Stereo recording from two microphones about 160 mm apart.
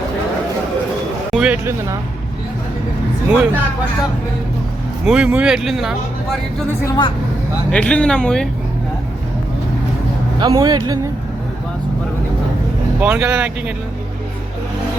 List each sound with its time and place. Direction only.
1.3 s a sound: 5° right (ahead or behind)
3.2 s speech: 10° right (ahead or behind)
5.0 s speech: 5° right (ahead or behind)
6.8 s speech: 20° left (ahead or behind)
7.7 s speech: 5° left (ahead or behind)
10.4 s a man's voice: 25° right (ahead or behind)
13.0 s speech: 5° right (ahead or behind)